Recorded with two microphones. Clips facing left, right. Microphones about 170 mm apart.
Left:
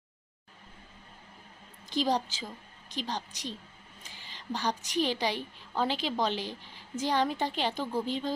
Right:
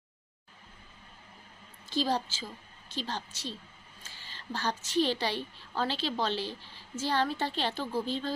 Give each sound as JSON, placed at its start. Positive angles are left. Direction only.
{"t": 1.9, "sound": "a woman's voice", "side_deg": 15}